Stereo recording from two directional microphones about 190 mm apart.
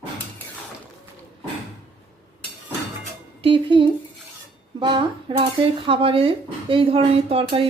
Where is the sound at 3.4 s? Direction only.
25° right (ahead or behind).